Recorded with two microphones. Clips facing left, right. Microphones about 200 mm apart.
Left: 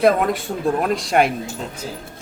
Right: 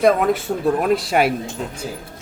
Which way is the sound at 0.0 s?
Centre (ahead or behind).